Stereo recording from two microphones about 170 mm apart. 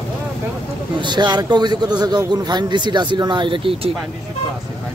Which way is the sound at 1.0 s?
25° right (ahead or behind).